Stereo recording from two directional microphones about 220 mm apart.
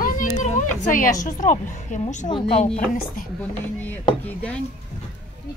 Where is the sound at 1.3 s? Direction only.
35° left (ahead or behind).